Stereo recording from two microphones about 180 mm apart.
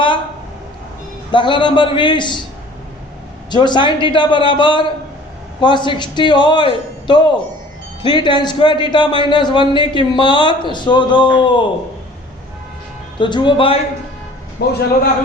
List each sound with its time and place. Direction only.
1.3 s a man's voice: 25° left (ahead or behind)
3.5 s a man's voice: 25° left (ahead or behind)
13.1 s a man's voice: 25° left (ahead or behind)
14.6 s a man's voice: 60° left (ahead or behind)